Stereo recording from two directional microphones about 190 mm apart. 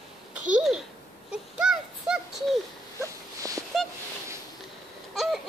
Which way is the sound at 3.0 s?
15° right (ahead or behind).